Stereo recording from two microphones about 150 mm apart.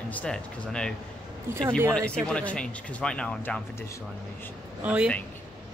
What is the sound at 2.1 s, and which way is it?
Speech, 5° left (ahead or behind).